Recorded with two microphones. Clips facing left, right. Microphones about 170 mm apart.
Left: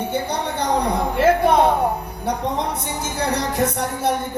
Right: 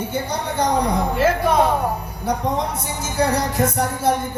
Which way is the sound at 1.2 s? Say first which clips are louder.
Left 3 dB; 60° left (ahead or behind).